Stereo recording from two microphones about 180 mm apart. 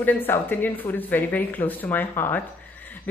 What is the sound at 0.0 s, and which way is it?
Speech, 10° left (ahead or behind).